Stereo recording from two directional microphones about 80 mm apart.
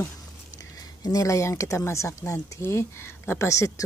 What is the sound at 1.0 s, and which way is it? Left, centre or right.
Speech, left.